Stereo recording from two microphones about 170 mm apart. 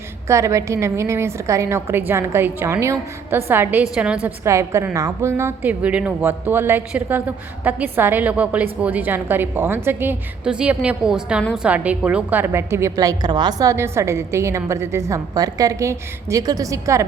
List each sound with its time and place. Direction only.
0.3 s speech: 15° right (ahead or behind)